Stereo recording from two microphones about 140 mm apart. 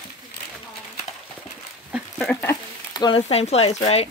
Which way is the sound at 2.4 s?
30° left (ahead or behind).